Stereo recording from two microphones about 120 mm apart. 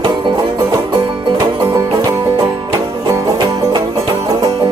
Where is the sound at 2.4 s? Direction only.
35° right (ahead or behind).